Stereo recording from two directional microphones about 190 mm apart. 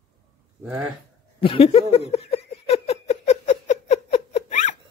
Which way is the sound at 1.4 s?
30° left (ahead or behind).